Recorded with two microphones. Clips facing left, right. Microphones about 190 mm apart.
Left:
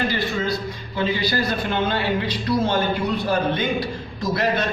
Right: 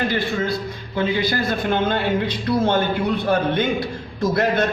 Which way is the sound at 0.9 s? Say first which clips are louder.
Right 2 dB; 50° right (ahead or behind).